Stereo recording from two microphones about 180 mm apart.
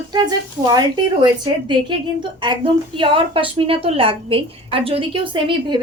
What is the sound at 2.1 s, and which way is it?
A woman's voice, 25° right (ahead or behind).